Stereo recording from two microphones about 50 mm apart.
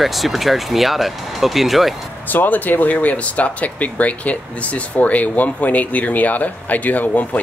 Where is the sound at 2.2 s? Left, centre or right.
Left.